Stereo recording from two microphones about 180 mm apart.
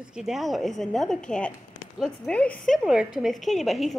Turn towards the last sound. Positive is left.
turn(degrees=0)  # may be behind; listen again after turning